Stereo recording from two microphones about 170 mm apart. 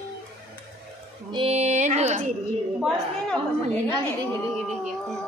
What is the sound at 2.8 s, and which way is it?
A woman's voice, centre (ahead or behind).